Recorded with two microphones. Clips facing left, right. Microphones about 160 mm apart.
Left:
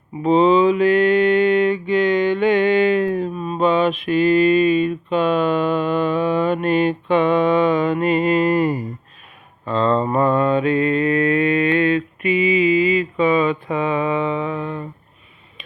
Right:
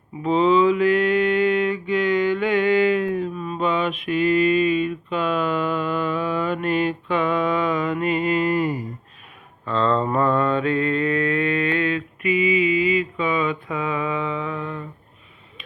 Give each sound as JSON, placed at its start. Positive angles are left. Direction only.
{"t": 0.2, "sound": "mantra", "side_deg": 25}
{"t": 9.6, "sound": "mantra", "side_deg": 10}